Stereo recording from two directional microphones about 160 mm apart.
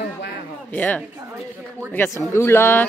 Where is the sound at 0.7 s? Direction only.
10° left (ahead or behind).